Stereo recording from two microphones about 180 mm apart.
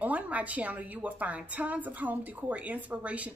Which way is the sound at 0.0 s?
10° right (ahead or behind).